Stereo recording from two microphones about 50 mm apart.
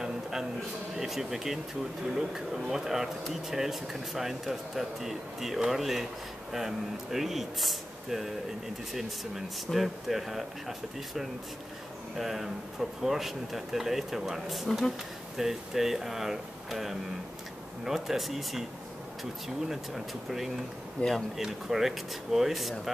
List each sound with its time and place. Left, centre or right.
0.0 s a sound: centre
0.9 s speech: centre
9.7 s speech: centre
19.7 s speech: centre
21.0 s speech: left
21.4 s speech: centre